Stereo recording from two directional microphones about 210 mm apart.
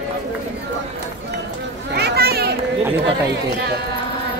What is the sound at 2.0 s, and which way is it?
Children playing, 50° right (ahead or behind).